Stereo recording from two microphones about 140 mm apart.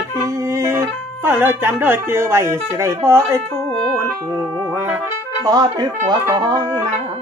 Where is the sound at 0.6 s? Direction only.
20° right (ahead or behind).